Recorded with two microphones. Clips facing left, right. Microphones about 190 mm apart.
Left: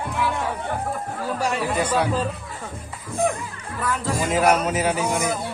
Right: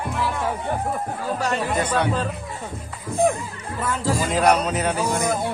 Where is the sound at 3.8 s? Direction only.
25° right (ahead or behind).